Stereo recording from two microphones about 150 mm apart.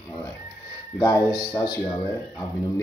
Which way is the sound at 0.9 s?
20° left (ahead or behind).